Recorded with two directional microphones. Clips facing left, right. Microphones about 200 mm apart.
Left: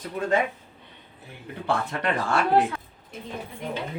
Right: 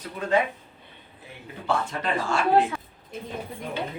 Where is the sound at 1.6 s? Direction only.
60° left (ahead or behind).